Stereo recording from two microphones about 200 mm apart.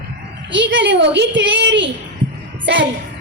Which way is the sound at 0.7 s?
65° right (ahead or behind).